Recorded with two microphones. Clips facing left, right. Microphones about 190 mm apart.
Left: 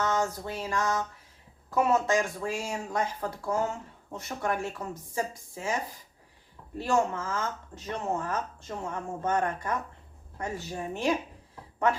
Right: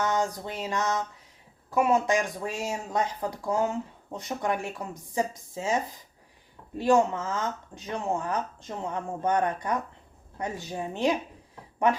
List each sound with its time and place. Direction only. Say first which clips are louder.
0.0 s a sound: right 1 dB; 15° right (ahead or behind)
1.7 s speech: right 1 dB; 10° right (ahead or behind)
6.7 s speech: right 4 dB; 15° right (ahead or behind)